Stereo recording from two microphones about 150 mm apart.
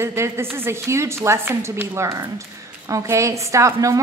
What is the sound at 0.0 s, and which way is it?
A woman's voice, 15° right (ahead or behind).